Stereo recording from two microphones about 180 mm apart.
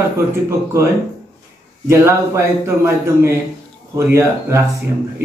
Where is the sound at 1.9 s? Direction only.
15° right (ahead or behind).